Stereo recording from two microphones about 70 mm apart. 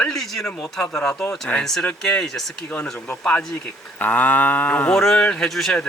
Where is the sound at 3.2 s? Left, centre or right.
Centre.